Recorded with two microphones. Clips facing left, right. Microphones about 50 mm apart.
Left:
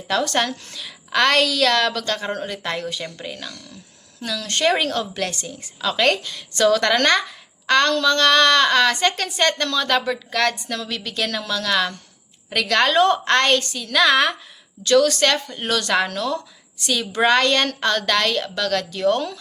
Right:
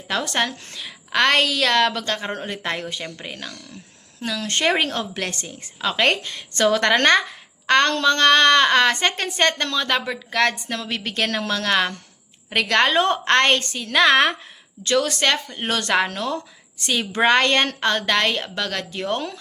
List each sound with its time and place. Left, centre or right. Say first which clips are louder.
0.1 s a woman's voice: left 2 dB; centre
14.8 s a woman's voice: left 3 dB; right